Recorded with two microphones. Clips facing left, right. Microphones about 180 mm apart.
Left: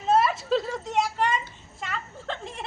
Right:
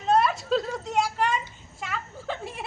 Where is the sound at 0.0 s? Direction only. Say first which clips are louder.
Even; centre (ahead or behind).